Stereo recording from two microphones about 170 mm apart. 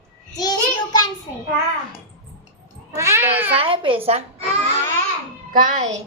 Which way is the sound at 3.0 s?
15° right (ahead or behind).